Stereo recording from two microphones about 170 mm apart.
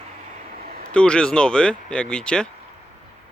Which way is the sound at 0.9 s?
5° left (ahead or behind).